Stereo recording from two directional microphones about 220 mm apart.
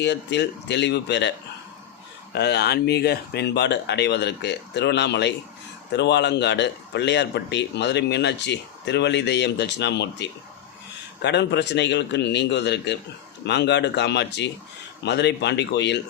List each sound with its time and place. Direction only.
0.0 s a man's voice: 50° left (ahead or behind)
2.3 s a man's voice: 50° left (ahead or behind)